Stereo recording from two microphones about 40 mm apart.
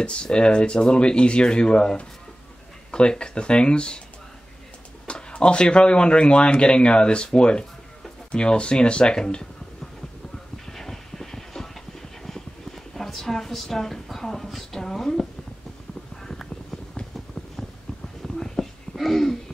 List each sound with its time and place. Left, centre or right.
0.0 s speech: left
5.0 s speech: left
10.7 s train: centre
12.2 s clip-clop: centre
12.9 s speech: centre
18.2 s a sound: centre